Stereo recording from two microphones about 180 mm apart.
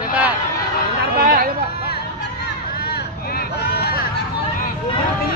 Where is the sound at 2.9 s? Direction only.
60° left (ahead or behind).